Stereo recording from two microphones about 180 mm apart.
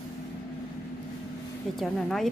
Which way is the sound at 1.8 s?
Centre (ahead or behind).